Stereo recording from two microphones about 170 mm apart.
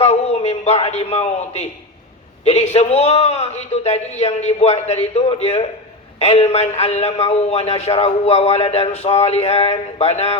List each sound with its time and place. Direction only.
0.0 s a man's voice: 40° left (ahead or behind)